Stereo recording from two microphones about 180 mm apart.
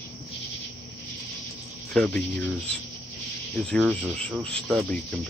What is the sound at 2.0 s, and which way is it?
Speech, 5° left (ahead or behind).